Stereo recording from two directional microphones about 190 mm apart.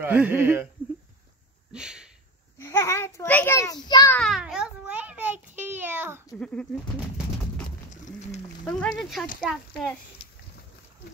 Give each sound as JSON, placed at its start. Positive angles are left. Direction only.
{"t": 0.0, "sound": "speech", "side_deg": -10}
{"t": 1.7, "sound": "a sound", "side_deg": -5}
{"t": 2.6, "sound": "a child's voice", "side_deg": 15}
{"t": 4.1, "sound": "a child's voice", "side_deg": 0}
{"t": 6.3, "sound": "speech", "side_deg": 5}
{"t": 7.9, "sound": "a sound", "side_deg": 40}
{"t": 8.6, "sound": "speech", "side_deg": 5}